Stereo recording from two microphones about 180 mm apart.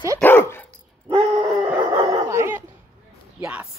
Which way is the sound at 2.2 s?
15° right (ahead or behind).